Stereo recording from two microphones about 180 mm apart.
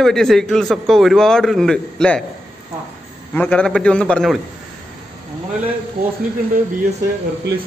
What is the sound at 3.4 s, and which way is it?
A man's voice, 5° left (ahead or behind).